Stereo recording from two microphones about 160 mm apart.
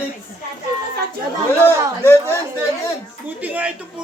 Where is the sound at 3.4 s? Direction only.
10° right (ahead or behind).